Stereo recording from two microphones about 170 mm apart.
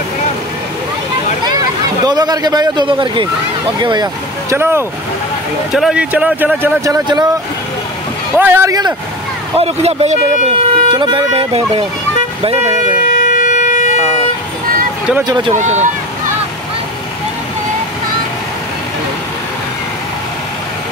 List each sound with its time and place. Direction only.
1.5 s speech: 25° right (ahead or behind)
5.7 s speech: 5° right (ahead or behind); by 7.2 s 20° right (ahead or behind)
8.4 s speech: 15° right (ahead or behind)
9.6 s speech: 40° right (ahead or behind)
12.8 s siren: 50° left (ahead or behind)
15.2 s speech: 25° right (ahead or behind)
15.5 s speech: 45° right (ahead or behind)